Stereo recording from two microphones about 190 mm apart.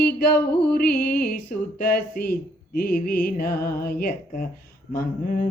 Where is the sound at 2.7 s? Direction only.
50° left (ahead or behind).